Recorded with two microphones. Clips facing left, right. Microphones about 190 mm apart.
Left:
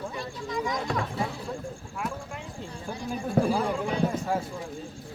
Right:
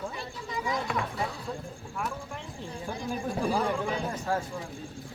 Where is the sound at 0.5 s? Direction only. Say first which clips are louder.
Left 2 dB; 5° right (ahead or behind).